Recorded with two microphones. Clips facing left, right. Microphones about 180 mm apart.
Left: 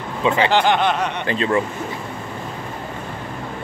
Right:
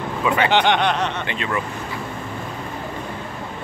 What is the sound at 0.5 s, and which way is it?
Speech, centre (ahead or behind).